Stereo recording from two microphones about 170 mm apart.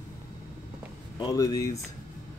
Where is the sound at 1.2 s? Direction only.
20° left (ahead or behind).